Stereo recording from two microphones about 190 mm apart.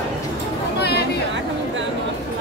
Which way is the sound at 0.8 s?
60° left (ahead or behind).